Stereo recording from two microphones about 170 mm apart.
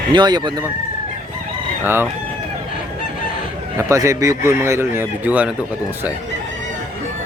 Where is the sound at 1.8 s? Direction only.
15° right (ahead or behind).